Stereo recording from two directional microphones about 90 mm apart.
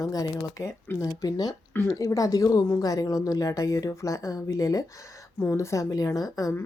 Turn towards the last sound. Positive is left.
turn(degrees=40)  # may be behind; listen again after turning